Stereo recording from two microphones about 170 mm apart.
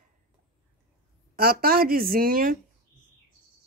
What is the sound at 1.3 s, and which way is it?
Speech, 60° right (ahead or behind).